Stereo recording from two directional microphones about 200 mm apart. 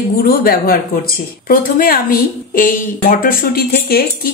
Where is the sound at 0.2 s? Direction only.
50° left (ahead or behind).